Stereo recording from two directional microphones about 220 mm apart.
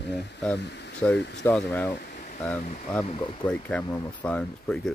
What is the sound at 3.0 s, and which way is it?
Speech, 20° left (ahead or behind).